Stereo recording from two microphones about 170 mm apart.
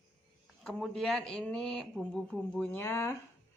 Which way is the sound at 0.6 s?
Centre (ahead or behind).